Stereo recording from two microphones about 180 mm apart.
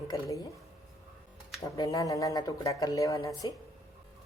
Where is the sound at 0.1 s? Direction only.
20° left (ahead or behind).